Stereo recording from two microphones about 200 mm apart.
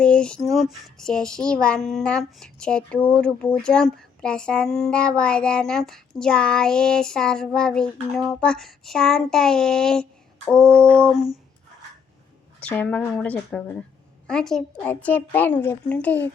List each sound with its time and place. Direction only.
0.0 s speech: 5° left (ahead or behind)
12.5 s a child's voice: 10° left (ahead or behind)